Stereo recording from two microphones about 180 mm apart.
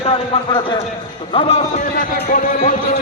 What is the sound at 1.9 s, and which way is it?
Speech, 50° left (ahead or behind).